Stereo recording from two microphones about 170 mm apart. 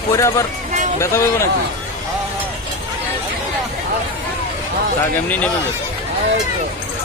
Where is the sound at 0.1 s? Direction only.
20° left (ahead or behind).